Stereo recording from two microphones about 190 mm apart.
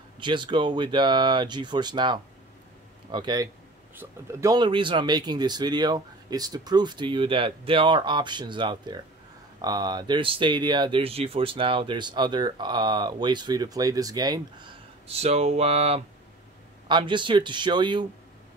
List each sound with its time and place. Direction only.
0.2 s speech: 25° right (ahead or behind)
15.0 s speech: 35° right (ahead or behind)